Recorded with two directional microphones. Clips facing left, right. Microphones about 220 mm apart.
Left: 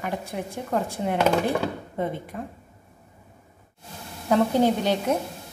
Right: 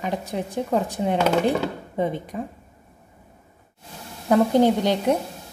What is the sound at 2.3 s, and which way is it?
Speech, 15° right (ahead or behind).